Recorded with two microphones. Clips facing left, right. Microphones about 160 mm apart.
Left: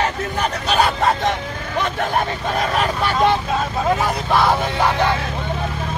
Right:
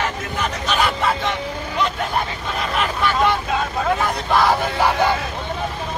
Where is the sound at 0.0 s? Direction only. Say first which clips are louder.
Left 3 dB; 35° left (ahead or behind).